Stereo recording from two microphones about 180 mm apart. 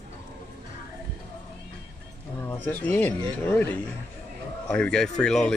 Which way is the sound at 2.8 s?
10° left (ahead or behind).